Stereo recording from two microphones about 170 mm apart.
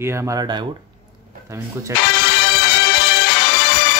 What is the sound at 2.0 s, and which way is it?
Music, 80° left.